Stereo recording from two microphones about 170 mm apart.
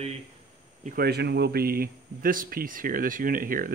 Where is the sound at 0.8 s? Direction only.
60° right (ahead or behind).